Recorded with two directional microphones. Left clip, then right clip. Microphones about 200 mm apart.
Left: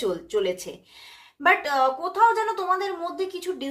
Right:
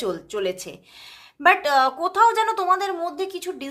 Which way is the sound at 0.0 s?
30° right (ahead or behind).